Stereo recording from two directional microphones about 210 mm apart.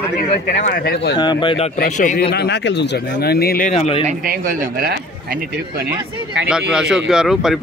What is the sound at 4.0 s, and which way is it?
Speech, 40° right (ahead or behind).